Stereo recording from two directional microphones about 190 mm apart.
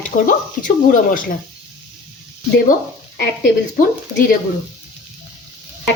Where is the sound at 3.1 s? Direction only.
55° left (ahead or behind).